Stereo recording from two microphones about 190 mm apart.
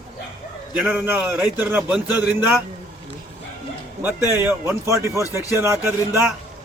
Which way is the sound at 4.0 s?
10° right (ahead or behind).